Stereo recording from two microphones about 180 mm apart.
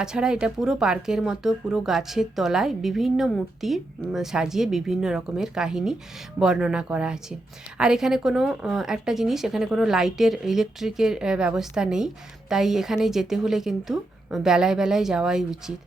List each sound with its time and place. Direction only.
0.0 s a woman's voice: 5° right (ahead or behind)